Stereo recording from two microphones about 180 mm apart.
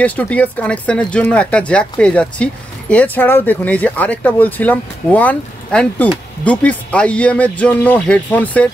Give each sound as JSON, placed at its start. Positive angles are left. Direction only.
{"t": 0.0, "sound": "speech", "side_deg": 10}